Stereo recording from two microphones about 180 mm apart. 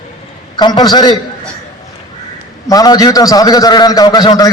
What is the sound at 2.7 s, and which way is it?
A man's voice, 20° left (ahead or behind).